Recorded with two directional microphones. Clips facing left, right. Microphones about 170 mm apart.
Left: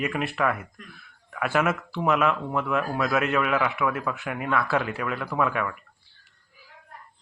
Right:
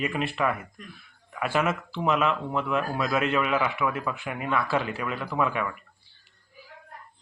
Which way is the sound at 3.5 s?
10° right (ahead or behind).